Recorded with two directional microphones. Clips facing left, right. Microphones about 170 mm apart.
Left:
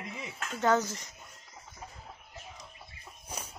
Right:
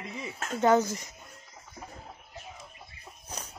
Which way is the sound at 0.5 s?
15° right (ahead or behind).